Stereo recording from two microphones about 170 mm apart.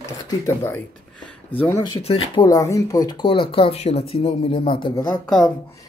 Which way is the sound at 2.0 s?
35° left (ahead or behind).